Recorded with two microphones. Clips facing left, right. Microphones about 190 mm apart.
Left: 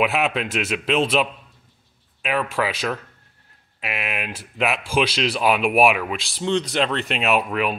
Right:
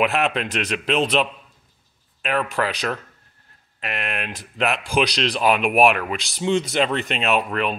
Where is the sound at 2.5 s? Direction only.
Centre (ahead or behind).